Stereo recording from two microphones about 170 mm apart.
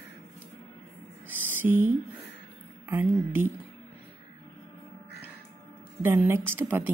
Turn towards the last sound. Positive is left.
turn(degrees=-10)  # may be behind; listen again after turning